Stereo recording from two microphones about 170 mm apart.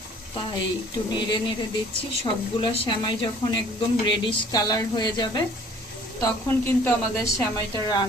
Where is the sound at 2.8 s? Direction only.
30° left (ahead or behind).